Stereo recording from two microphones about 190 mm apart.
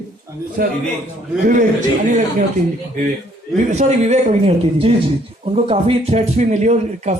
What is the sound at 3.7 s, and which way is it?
A man's voice, 35° right (ahead or behind).